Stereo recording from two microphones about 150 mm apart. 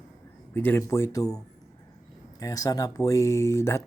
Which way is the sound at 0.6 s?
15° left (ahead or behind).